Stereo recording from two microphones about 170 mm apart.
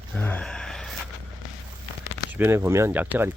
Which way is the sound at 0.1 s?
10° left (ahead or behind).